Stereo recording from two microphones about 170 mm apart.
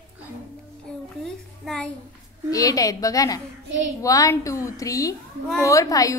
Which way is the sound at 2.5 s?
20° left (ahead or behind).